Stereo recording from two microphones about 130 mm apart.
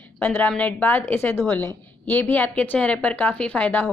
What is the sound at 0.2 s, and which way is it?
A woman's voice, 15° left (ahead or behind).